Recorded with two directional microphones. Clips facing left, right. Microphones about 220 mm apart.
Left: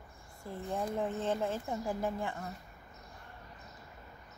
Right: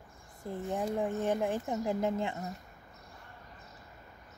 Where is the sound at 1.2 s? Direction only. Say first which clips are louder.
Right 3 dB; 15° right (ahead or behind).